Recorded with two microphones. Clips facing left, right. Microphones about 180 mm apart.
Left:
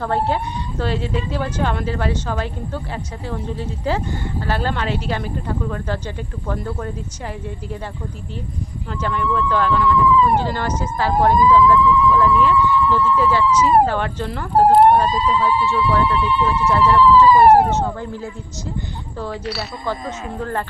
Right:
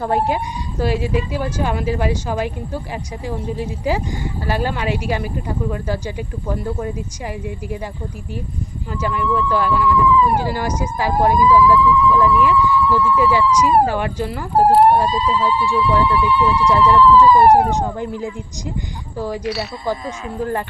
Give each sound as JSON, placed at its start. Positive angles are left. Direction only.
{"t": 0.0, "sound": "speech", "side_deg": -10}
{"t": 8.9, "sound": "speech", "side_deg": -10}
{"t": 15.6, "sound": "speech", "side_deg": -10}